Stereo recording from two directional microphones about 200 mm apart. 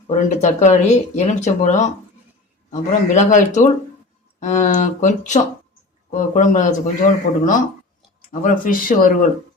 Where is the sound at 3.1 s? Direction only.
40° left (ahead or behind).